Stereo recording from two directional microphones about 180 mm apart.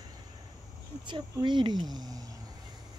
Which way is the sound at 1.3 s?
25° right (ahead or behind).